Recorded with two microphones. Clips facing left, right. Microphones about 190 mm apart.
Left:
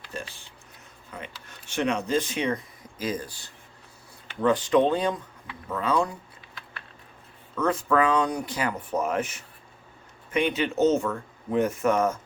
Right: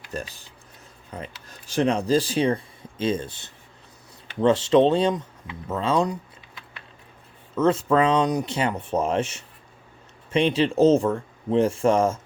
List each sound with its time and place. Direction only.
0.1 s speech: 40° right (ahead or behind); by 6.1 s 25° right (ahead or behind)
7.5 s speech: 25° right (ahead or behind)